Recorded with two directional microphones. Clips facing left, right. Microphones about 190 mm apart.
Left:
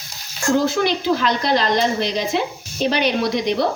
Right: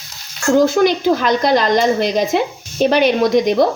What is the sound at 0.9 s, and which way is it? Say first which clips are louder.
Speech: right 4 dB; 50° right (ahead or behind).